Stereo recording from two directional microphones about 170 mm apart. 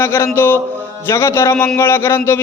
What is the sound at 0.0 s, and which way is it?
A man's voice, 15° left (ahead or behind).